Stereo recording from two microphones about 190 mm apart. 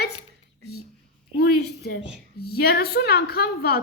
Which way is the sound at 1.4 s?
55° left (ahead or behind).